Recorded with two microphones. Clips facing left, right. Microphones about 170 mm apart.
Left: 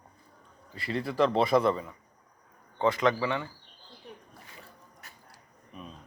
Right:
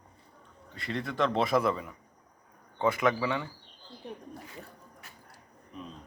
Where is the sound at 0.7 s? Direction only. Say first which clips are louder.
Left 3 dB; 5° left (ahead or behind).